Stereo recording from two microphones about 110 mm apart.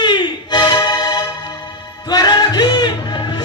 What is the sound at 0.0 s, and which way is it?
Music, 45° left (ahead or behind).